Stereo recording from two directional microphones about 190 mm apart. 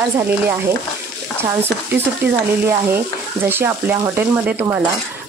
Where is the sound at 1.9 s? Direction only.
10° right (ahead or behind).